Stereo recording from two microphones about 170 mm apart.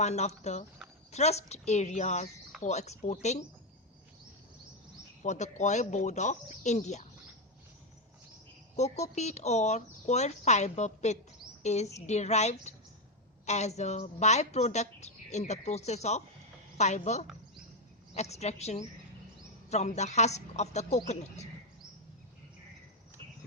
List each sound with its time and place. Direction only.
0.0 s a woman's voice: 40° left (ahead or behind)
5.2 s speech: 45° left (ahead or behind)
8.7 s a woman's voice: 40° left (ahead or behind)